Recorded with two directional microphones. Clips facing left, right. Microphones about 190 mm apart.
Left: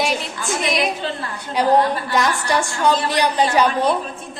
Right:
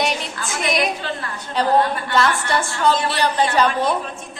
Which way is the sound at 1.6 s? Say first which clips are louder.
Left 2 dB; 10° left (ahead or behind).